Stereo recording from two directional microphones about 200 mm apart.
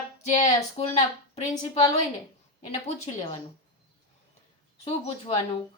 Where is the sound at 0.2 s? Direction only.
35° left (ahead or behind).